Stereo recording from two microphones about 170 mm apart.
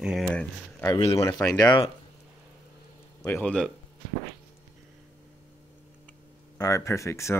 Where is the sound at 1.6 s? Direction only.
25° left (ahead or behind).